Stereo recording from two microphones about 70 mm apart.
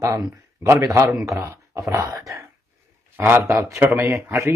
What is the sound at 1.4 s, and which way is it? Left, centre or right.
Speech, right.